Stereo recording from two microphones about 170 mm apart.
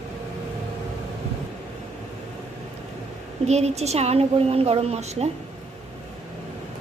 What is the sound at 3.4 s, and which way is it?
A woman's voice, 40° right (ahead or behind).